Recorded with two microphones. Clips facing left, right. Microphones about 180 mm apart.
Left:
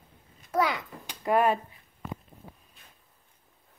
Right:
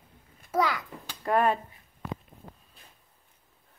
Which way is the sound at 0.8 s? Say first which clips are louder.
Even; 15° left (ahead or behind).